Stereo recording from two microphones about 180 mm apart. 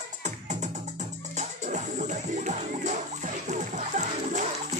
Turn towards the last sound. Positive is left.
turn(degrees=-40)  # may be behind; listen again after turning